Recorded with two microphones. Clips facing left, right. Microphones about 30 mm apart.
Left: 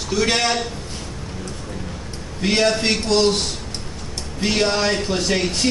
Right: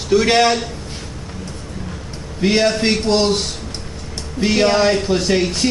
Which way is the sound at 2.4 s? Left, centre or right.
Centre.